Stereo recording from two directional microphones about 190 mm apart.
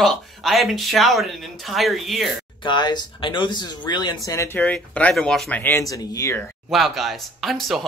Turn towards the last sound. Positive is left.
turn(degrees=0)  # may be behind; listen again after turning